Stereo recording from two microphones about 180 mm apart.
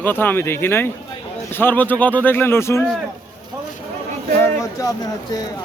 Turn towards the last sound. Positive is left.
turn(degrees=15)  # may be behind; listen again after turning